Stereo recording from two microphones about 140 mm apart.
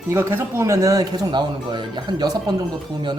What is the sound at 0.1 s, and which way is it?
Speech, 15° right (ahead or behind).